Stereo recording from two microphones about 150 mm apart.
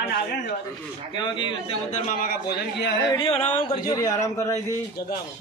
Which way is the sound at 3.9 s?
20° left (ahead or behind).